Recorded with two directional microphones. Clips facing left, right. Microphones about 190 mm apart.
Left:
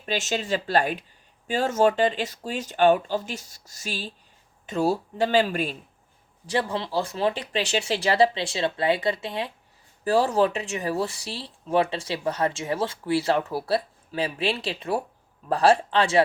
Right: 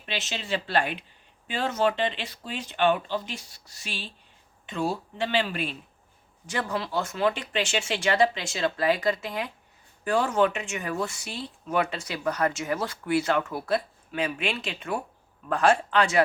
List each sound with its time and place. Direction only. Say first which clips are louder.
0.0 s speech: left 7 dB; 45° left (ahead or behind)
6.5 s speech: left 3 dB; 30° left (ahead or behind)